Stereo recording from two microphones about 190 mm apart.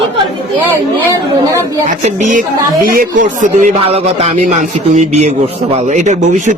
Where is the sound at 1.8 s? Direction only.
40° right (ahead or behind).